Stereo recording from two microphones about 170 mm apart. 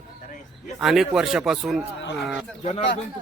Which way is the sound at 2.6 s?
40° left (ahead or behind).